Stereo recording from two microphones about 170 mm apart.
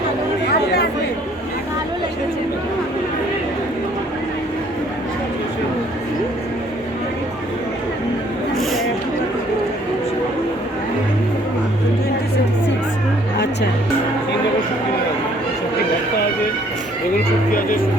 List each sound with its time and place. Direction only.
0.5 s chatter: 75° left (ahead or behind)
8.5 s a sound: centre (ahead or behind)
13.3 s music: 90° left